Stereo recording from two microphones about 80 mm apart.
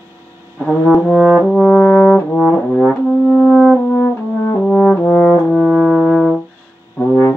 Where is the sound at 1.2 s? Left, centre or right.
Centre.